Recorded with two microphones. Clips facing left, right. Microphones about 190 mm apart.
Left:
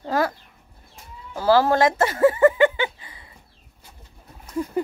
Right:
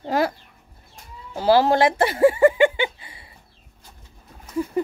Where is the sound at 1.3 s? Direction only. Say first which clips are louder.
Right 1 dB; 20° right (ahead or behind).